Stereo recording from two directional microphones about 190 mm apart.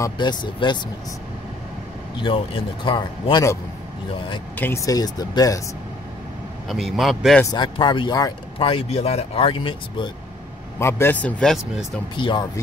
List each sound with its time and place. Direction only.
0.0 s speech: 25° left (ahead or behind)
2.2 s speech: 25° left (ahead or behind)
4.6 s speech: 15° left (ahead or behind)
6.7 s a man's voice: centre (ahead or behind)
7.5 s speech: 25° left (ahead or behind)
10.8 s speech: 15° left (ahead or behind)
11.7 s speech: 25° left (ahead or behind)